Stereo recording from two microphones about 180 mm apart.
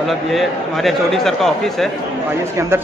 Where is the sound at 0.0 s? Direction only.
Centre (ahead or behind).